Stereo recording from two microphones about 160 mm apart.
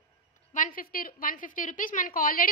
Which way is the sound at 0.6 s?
60° left (ahead or behind).